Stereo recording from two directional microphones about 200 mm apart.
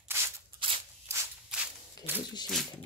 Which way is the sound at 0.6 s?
25° right (ahead or behind).